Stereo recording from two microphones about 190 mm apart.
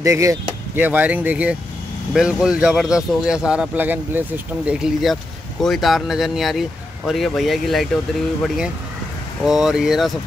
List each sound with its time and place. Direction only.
0.0 s speech: 15° right (ahead or behind); by 8.0 s centre (ahead or behind)
9.4 s speech: centre (ahead or behind)